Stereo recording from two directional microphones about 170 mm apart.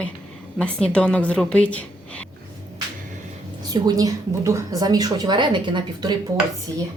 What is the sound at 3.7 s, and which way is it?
A woman's voice, 20° right (ahead or behind).